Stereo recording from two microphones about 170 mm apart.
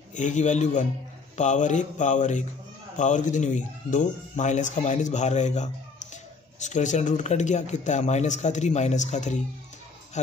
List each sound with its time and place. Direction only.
0.1 s speech: 45° left (ahead or behind)